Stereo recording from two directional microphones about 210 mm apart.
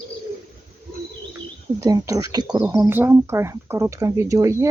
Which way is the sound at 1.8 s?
15° right (ahead or behind).